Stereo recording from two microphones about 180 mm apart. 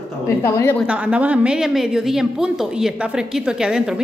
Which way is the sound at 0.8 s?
5° right (ahead or behind).